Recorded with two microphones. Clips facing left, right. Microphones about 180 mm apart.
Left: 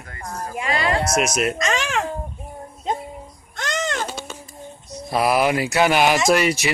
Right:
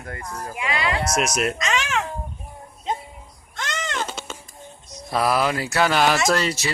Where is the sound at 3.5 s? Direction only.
40° left (ahead or behind).